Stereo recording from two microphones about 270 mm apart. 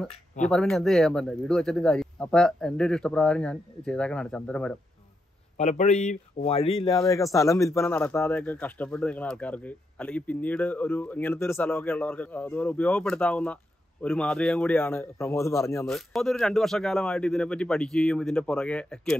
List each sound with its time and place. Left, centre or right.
0.5 s a man's voice: centre
5.6 s a man's voice: left; by 19.1 s centre